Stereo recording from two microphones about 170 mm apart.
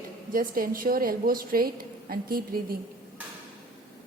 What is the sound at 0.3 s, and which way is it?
A woman's voice, 55° right (ahead or behind).